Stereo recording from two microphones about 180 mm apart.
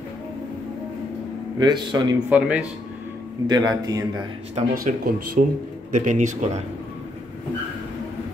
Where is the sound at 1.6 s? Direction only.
25° right (ahead or behind).